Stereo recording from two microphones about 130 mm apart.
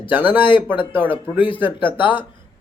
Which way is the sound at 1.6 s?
40° left (ahead or behind).